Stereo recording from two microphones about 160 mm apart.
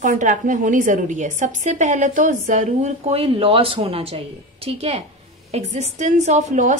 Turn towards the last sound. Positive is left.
turn(degrees=-50)  # may be behind; listen again after turning